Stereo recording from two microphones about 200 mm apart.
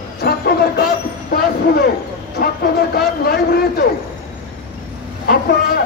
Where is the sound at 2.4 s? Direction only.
55° left (ahead or behind).